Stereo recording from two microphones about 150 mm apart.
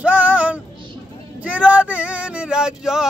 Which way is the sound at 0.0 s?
10° right (ahead or behind).